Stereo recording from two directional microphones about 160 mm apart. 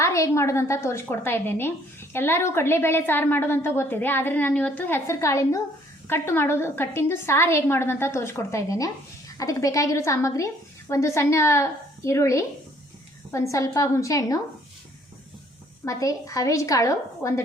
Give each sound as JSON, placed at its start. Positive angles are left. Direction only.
{"t": 0.0, "sound": "a woman's voice", "side_deg": 20}
{"t": 15.8, "sound": "a woman's voice", "side_deg": 20}